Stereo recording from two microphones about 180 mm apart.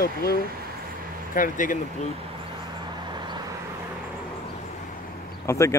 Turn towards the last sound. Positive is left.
turn(degrees=15)  # may be behind; listen again after turning